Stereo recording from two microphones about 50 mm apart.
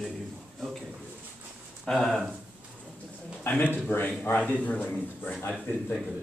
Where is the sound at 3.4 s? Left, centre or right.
Left.